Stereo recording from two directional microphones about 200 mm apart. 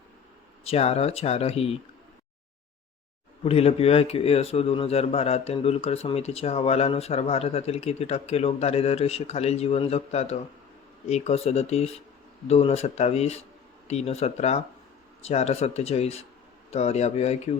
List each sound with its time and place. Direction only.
0.6 s a man's voice: 30° left (ahead or behind)
3.4 s a man's voice: 30° left (ahead or behind)